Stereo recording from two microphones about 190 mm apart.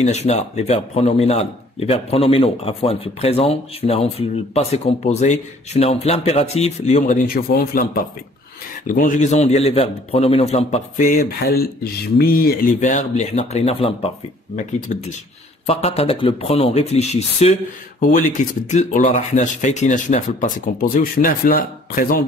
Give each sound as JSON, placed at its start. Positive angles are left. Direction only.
{"t": 0.0, "sound": "speech", "side_deg": 35}
{"t": 18.7, "sound": "speech", "side_deg": 40}